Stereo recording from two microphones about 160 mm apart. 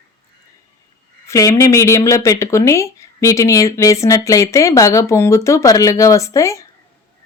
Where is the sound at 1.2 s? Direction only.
20° left (ahead or behind).